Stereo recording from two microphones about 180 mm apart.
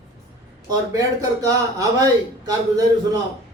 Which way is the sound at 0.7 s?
20° right (ahead or behind).